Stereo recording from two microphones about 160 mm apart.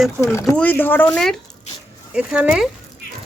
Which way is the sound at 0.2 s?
15° left (ahead or behind).